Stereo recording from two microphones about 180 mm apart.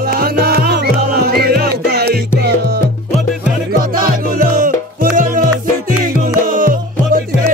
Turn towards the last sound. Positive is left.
turn(degrees=-50)  # may be behind; listen again after turning